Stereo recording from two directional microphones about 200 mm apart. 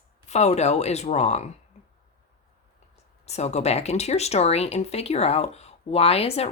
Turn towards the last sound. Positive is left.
turn(degrees=30)  # may be behind; listen again after turning